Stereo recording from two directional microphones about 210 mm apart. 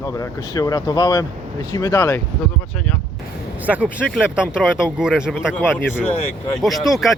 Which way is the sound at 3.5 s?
5° right (ahead or behind).